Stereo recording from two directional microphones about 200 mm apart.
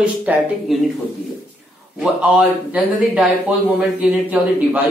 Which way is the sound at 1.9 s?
5° right (ahead or behind).